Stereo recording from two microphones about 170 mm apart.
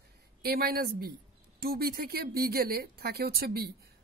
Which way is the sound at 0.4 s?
65° right (ahead or behind).